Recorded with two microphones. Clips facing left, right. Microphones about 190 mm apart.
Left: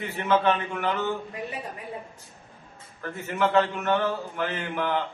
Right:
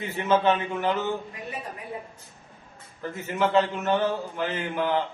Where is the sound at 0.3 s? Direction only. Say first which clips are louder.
Right 1 dB; 20° right (ahead or behind).